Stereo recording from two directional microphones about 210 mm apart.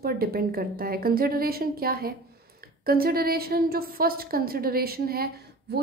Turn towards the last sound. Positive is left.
turn(degrees=-45)  # may be behind; listen again after turning